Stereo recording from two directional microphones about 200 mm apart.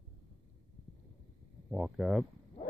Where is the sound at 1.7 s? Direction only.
5° right (ahead or behind).